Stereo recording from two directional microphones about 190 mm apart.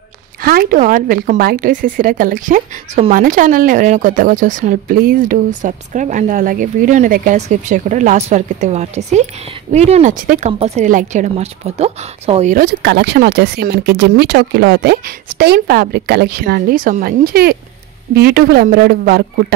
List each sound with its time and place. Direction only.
0.4 s speech: 50° right (ahead or behind); by 12.5 s 35° right (ahead or behind)
12.5 s speech: 55° right (ahead or behind)